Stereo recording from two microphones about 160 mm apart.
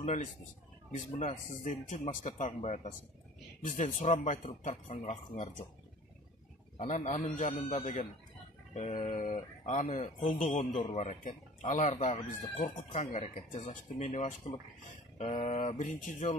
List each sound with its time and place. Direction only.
0.9 s speech: 50° left (ahead or behind)
6.9 s speech: 50° left (ahead or behind)
15.3 s speech: 40° left (ahead or behind)